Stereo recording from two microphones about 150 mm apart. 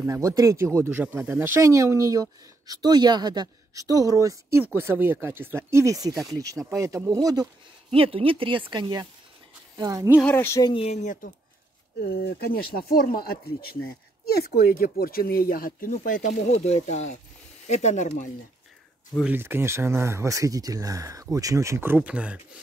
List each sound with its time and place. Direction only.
0.0 s speech: 20° right (ahead or behind)
7.9 s speech: 40° right (ahead or behind); by 10.1 s 25° right (ahead or behind)
10.2 s speech: 15° left (ahead or behind)
10.6 s speech: 40° left (ahead or behind)
12.0 s speech: 90° left; by 18.3 s 55° left (ahead or behind)
19.2 s speech: 15° right (ahead or behind)